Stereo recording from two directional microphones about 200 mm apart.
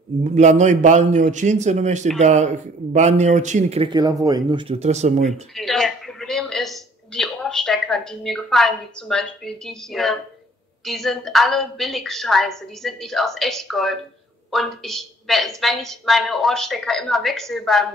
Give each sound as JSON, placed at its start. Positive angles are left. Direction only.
{"t": 0.2, "sound": "a man's voice", "side_deg": -35}
{"t": 5.6, "sound": "a man's voice", "side_deg": 0}